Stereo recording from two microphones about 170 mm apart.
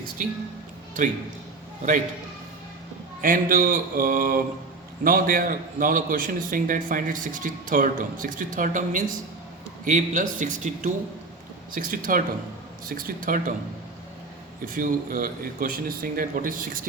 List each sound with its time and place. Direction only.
0.2 s a man's voice: 55° right (ahead or behind)
3.2 s a man's voice: 55° right (ahead or behind)
14.6 s speech: 50° right (ahead or behind)